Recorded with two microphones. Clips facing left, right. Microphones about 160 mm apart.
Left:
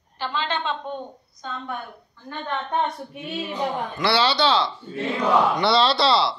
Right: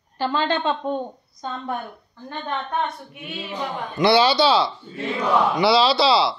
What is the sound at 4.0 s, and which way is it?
A man's voice, 15° right (ahead or behind).